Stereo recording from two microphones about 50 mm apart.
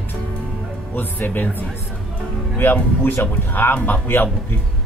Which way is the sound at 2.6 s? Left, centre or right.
Left.